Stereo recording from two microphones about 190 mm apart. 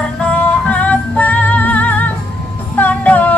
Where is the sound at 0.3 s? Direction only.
5° left (ahead or behind).